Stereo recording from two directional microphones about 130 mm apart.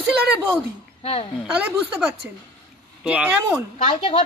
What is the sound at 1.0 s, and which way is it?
Speech, 50° left (ahead or behind).